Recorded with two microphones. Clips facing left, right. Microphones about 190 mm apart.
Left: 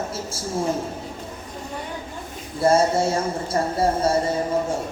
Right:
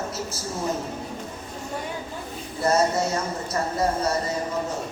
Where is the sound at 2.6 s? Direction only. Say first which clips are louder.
Left 4 dB; 30° left (ahead or behind).